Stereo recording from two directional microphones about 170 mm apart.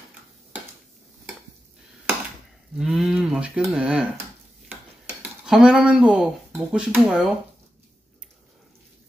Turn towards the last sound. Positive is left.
turn(degrees=-5)  # may be behind; listen again after turning